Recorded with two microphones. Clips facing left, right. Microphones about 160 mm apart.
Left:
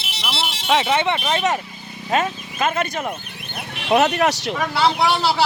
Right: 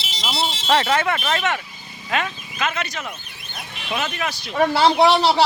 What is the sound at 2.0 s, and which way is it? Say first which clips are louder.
Speech: left 4 dB; 40° left (ahead or behind).